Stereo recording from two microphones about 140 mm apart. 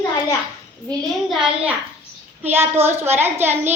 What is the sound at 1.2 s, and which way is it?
A child's voice, 5° right (ahead or behind).